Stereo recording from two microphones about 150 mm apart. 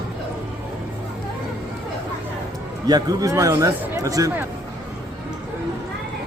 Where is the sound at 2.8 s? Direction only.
25° right (ahead or behind).